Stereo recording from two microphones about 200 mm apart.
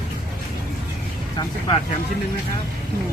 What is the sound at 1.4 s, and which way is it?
Speech, 25° left (ahead or behind).